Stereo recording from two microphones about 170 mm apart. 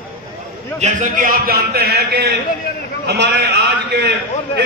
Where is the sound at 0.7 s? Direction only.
45° right (ahead or behind).